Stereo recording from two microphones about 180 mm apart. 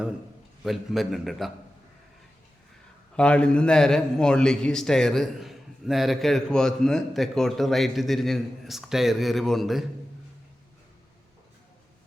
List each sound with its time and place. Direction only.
0.6 s a man's voice: centre (ahead or behind)
3.2 s a man's voice: 5° left (ahead or behind)